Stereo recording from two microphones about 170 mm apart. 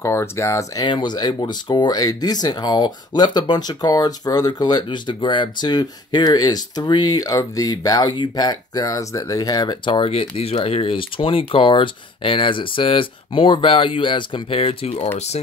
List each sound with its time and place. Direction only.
0.0 s speech: 15° left (ahead or behind); by 15.4 s 40° left (ahead or behind)